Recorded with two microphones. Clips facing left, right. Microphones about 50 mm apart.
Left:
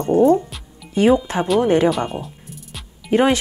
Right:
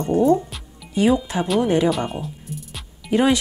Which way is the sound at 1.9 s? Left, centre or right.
Centre.